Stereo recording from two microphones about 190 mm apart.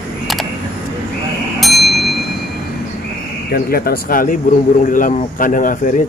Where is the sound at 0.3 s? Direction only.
Centre (ahead or behind).